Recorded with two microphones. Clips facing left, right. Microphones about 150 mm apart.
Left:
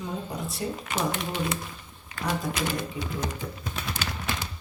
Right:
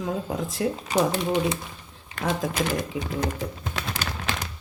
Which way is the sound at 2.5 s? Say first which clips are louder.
Right 4 dB; 45° right (ahead or behind).